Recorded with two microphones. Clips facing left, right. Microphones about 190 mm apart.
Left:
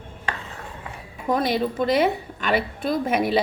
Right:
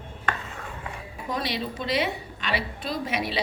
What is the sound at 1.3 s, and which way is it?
A woman's voice, 50° left (ahead or behind).